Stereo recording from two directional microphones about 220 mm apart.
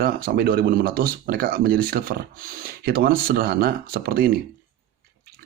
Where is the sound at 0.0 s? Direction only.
45° right (ahead or behind).